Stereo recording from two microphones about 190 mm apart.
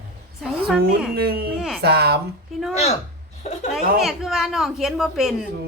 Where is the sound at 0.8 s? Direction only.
55° right (ahead or behind).